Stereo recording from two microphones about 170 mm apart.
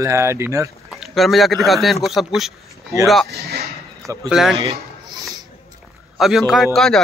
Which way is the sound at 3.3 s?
70° right (ahead or behind).